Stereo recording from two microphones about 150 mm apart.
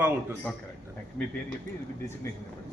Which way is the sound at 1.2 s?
10° left (ahead or behind).